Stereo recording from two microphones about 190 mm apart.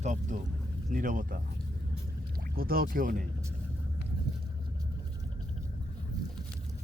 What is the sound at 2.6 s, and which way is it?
Speech, 50° right (ahead or behind).